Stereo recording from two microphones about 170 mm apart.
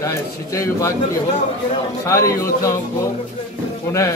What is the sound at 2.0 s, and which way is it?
Speech, 15° left (ahead or behind).